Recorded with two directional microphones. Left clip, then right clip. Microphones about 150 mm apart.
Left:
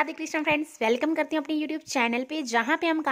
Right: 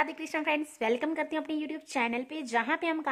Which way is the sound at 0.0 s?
20° left (ahead or behind).